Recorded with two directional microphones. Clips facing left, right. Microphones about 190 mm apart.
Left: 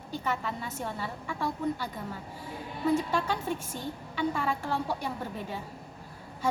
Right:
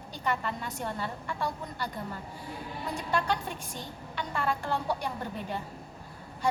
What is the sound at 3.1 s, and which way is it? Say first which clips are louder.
Speech: even; 5° left (ahead or behind).